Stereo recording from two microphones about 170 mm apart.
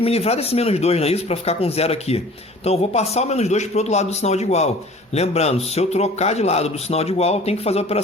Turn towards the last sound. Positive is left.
turn(degrees=40)  # may be behind; listen again after turning